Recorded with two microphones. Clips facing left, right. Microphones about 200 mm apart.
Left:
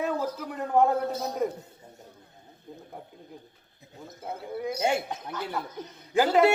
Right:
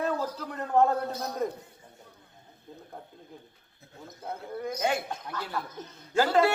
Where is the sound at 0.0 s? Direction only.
10° left (ahead or behind).